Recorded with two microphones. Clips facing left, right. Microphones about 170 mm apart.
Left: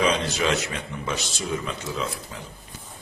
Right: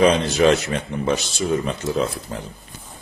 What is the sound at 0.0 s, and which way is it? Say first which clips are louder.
A man's voice: right 8 dB; 45° right (ahead or behind).